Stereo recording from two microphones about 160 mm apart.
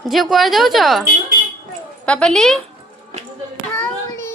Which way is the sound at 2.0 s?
5° left (ahead or behind).